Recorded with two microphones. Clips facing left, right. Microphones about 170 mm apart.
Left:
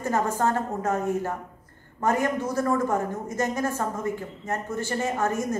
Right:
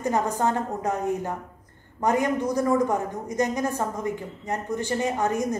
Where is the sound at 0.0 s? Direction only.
15° right (ahead or behind).